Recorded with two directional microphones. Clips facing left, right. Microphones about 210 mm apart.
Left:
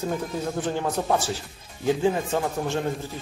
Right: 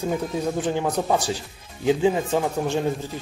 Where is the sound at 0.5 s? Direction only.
15° right (ahead or behind).